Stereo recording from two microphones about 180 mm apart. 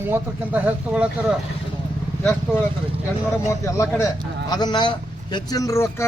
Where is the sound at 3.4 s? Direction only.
15° left (ahead or behind).